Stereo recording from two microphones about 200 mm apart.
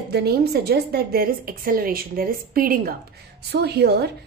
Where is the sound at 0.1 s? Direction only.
50° right (ahead or behind).